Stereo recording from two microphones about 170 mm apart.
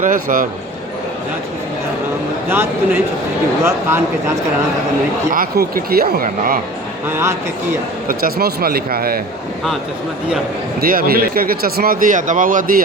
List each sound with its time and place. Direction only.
0.0 s a man's voice: 50° right (ahead or behind)
2.5 s a man's voice: 15° right (ahead or behind)
5.3 s speech: 55° right (ahead or behind)
7.1 s a man's voice: 15° right (ahead or behind)
8.0 s speech: 65° right (ahead or behind)
10.8 s speech: 60° right (ahead or behind)